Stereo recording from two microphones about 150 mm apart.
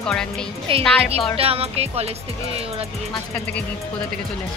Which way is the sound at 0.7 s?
35° right (ahead or behind).